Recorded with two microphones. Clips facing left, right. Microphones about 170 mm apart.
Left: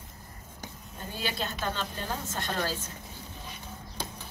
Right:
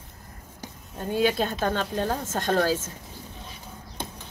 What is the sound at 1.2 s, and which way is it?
Speech, 55° right (ahead or behind).